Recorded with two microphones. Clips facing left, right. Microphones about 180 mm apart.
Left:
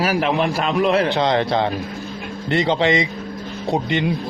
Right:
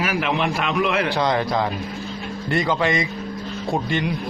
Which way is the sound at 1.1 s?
25° left (ahead or behind).